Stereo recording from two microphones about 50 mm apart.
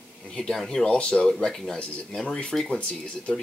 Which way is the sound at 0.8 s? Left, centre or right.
Centre.